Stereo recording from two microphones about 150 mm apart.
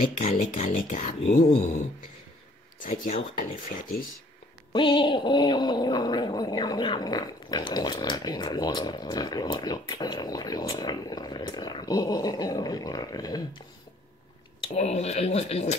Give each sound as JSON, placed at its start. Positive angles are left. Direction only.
{"t": 0.3, "sound": "speech", "side_deg": 55}
{"t": 2.8, "sound": "speech", "side_deg": 60}
{"t": 3.6, "sound": "speech", "side_deg": 70}
{"t": 4.7, "sound": "a sound", "side_deg": 35}
{"t": 14.8, "sound": "speech", "side_deg": 45}